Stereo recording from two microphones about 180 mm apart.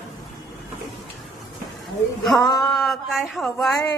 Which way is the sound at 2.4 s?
25° left (ahead or behind).